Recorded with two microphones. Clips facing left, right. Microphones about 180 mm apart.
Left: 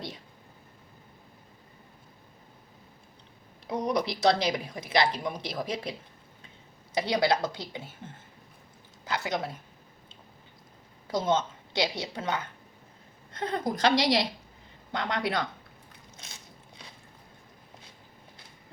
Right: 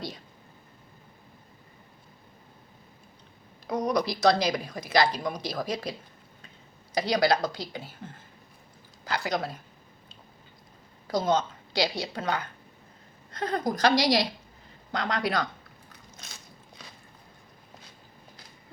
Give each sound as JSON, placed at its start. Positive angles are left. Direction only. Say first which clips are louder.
{"t": 3.7, "sound": "a woman's voice", "louder": "right 2 dB", "side_deg": 25}
{"t": 11.1, "sound": "a woman's voice", "louder": "right 1 dB", "side_deg": 25}
{"t": 16.3, "sound": "a sound", "louder": "right 1 dB", "side_deg": 25}